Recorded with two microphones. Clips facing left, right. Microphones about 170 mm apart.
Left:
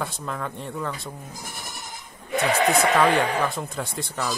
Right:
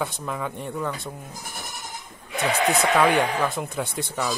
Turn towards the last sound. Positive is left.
turn(degrees=0)  # may be behind; listen again after turning